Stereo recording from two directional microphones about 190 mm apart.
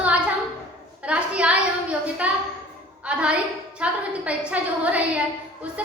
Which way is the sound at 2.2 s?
5° right (ahead or behind).